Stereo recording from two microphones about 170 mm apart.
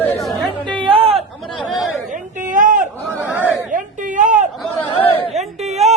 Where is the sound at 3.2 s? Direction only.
10° right (ahead or behind).